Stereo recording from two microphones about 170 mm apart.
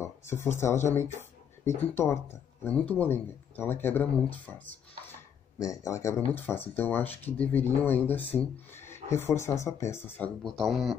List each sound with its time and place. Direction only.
0.0 s speech: 15° left (ahead or behind)
5.6 s speech: 20° left (ahead or behind); by 11.0 s centre (ahead or behind)